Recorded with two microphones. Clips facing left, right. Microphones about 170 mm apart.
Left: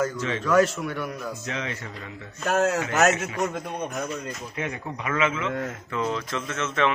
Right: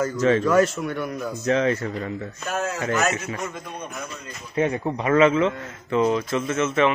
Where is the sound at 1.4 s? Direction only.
40° right (ahead or behind).